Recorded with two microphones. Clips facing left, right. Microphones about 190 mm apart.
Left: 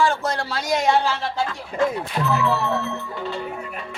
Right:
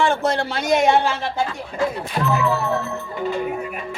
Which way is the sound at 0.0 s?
25° right (ahead or behind).